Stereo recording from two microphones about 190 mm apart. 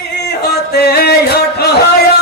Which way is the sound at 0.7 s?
55° left (ahead or behind).